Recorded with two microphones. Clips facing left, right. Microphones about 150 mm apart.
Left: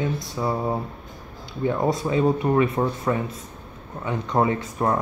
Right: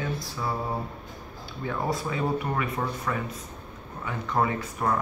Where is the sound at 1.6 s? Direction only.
25° left (ahead or behind).